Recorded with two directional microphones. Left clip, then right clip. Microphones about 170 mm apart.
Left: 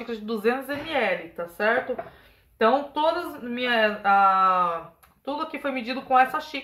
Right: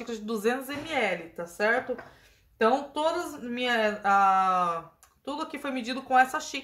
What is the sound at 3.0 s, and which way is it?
A woman's voice, 20° right (ahead or behind).